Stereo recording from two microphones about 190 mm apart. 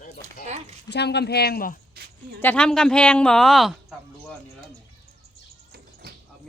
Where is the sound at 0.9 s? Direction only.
60° left (ahead or behind).